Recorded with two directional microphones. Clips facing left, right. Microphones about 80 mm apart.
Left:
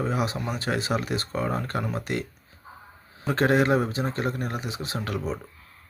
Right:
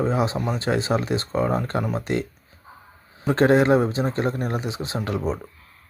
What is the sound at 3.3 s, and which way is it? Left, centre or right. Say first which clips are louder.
Speech: right 4 dB; right.